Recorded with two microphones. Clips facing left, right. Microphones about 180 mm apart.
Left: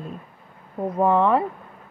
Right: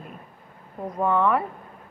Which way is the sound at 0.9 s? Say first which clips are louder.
Left 3 dB; 30° left (ahead or behind).